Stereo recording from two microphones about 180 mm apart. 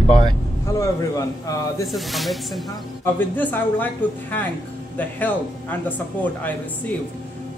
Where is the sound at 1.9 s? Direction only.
Centre (ahead or behind).